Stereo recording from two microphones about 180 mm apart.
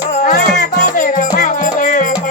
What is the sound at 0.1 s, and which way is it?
Music, 50° left (ahead or behind).